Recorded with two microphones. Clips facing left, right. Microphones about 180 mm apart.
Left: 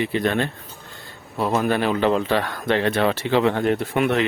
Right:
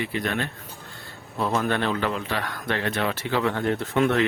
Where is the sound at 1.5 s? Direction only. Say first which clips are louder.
Left 4 dB; 10° left (ahead or behind).